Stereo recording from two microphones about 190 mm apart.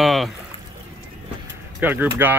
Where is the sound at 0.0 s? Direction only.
Centre (ahead or behind).